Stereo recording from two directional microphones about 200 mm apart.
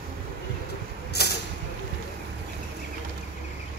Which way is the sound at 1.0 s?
55° left (ahead or behind).